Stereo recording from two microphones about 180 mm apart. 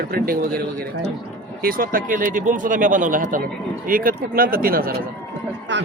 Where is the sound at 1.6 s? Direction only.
50° right (ahead or behind).